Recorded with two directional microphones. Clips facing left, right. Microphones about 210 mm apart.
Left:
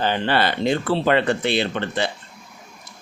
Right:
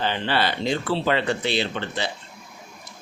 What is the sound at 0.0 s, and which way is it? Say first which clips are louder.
Speech: left 3 dB; 50° left (ahead or behind).